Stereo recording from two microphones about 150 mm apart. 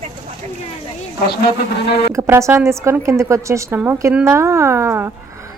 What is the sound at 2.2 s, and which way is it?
A woman's voice, 15° right (ahead or behind).